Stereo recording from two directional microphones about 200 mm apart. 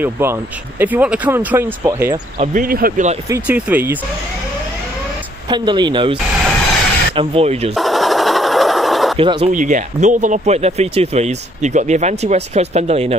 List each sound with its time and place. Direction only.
0.0 s speech: 10° right (ahead or behind)
2.3 s speech: 40° right (ahead or behind)
3.3 s speech: 10° right (ahead or behind)
5.5 s speech: 20° right (ahead or behind)
7.2 s speech: 30° right (ahead or behind)
7.7 s sewing machine: centre (ahead or behind)
9.2 s speech: 25° right (ahead or behind)
9.5 s speech: 40° right (ahead or behind)